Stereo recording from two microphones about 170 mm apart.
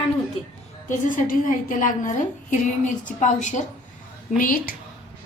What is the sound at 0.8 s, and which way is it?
A woman's voice, 50° left (ahead or behind).